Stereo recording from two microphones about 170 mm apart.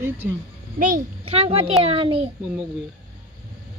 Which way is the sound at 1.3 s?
35° right (ahead or behind).